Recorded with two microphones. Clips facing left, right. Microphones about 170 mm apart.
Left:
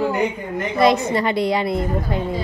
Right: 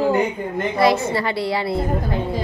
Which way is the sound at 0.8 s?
20° left (ahead or behind).